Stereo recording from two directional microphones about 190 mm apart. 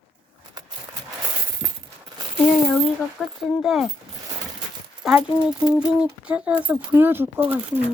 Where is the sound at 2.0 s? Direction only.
25° right (ahead or behind).